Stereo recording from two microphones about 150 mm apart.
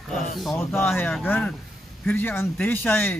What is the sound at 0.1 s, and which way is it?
Speech, centre (ahead or behind).